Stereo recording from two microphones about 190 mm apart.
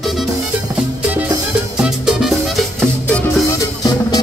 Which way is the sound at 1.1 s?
10° right (ahead or behind).